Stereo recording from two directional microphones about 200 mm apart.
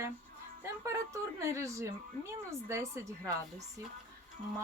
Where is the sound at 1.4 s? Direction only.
15° right (ahead or behind).